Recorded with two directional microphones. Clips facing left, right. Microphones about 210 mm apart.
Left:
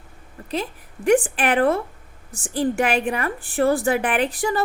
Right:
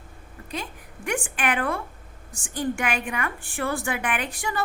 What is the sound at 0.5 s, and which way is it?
A woman's voice, 35° left (ahead or behind).